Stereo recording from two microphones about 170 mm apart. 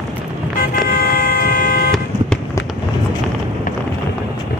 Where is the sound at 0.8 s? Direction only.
60° left (ahead or behind).